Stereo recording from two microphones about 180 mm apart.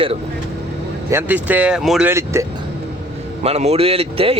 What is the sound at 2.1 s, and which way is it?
Speech, 15° right (ahead or behind).